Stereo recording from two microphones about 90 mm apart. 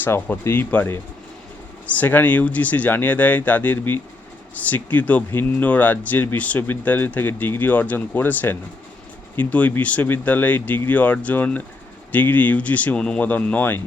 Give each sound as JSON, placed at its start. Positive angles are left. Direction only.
{"t": 0.0, "sound": "speech", "side_deg": 25}